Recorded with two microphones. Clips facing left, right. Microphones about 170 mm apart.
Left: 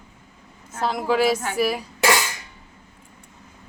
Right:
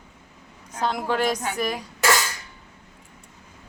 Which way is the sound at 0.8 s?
Centre (ahead or behind).